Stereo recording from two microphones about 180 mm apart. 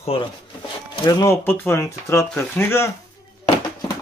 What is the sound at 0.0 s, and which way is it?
Speech, 30° left (ahead or behind).